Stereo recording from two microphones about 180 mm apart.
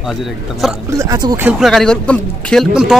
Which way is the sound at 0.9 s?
20° right (ahead or behind).